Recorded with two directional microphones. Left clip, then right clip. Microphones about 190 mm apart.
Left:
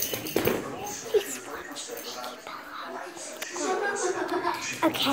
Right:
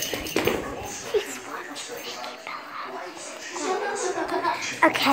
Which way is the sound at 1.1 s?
25° left (ahead or behind).